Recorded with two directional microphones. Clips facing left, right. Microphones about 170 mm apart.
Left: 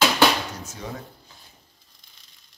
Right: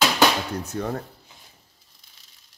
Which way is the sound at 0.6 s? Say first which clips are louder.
Right 7 dB; 55° right (ahead or behind).